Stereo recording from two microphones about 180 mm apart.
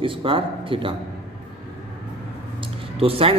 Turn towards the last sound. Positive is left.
turn(degrees=-30)  # may be behind; listen again after turning